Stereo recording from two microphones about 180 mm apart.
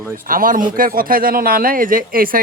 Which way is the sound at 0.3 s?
50° right (ahead or behind).